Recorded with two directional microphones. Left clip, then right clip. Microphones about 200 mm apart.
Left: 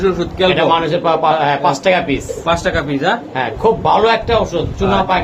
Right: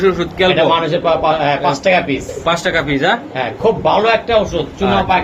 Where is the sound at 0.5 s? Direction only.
25° left (ahead or behind).